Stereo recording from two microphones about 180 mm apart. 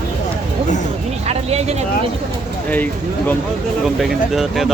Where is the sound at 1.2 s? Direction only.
35° right (ahead or behind).